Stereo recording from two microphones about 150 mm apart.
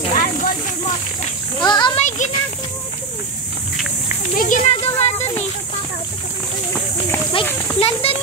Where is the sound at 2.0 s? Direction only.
55° left (ahead or behind).